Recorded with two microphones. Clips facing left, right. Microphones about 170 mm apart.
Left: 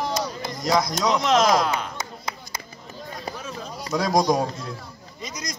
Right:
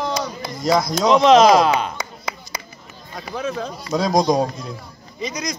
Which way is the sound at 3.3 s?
90° right.